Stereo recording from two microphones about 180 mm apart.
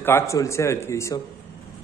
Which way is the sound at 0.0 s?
15° left (ahead or behind).